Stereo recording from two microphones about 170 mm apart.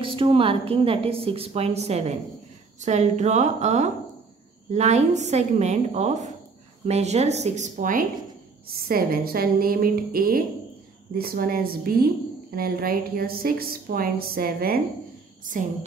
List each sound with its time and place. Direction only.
0.0 s a woman's voice: 30° right (ahead or behind); by 14.8 s 60° right (ahead or behind)